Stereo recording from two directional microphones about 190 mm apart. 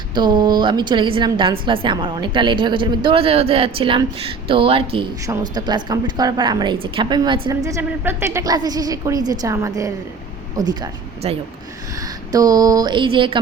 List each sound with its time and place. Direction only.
0.1 s a woman's voice: 25° right (ahead or behind)
11.2 s speech: 35° right (ahead or behind)
12.3 s a woman's voice: 20° right (ahead or behind)